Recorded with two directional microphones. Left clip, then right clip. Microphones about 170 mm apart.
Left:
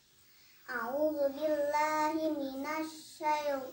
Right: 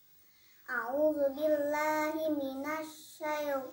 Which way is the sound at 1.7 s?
15° right (ahead or behind).